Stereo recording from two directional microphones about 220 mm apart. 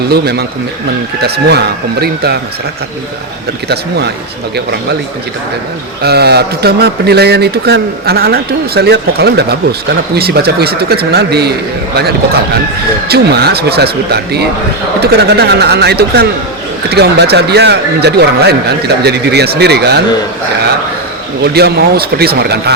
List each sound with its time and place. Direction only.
0.1 s speech: 45° right (ahead or behind)
3.7 s speech: 50° right (ahead or behind)
6.0 s speech: 45° right (ahead or behind)
13.1 s speech: 45° right (ahead or behind)
21.4 s speech: 45° right (ahead or behind)